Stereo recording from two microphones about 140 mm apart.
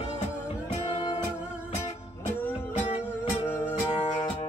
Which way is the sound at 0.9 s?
45° left (ahead or behind).